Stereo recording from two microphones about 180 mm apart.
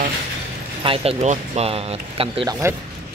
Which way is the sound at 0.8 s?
30° right (ahead or behind).